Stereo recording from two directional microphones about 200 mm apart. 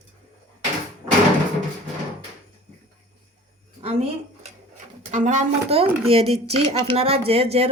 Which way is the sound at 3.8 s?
30° right (ahead or behind).